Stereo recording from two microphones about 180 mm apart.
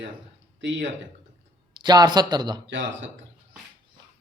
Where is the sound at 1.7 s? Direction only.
20° right (ahead or behind).